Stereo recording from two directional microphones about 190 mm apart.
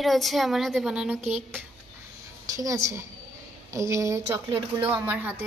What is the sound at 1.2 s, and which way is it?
Speech, 35° right (ahead or behind).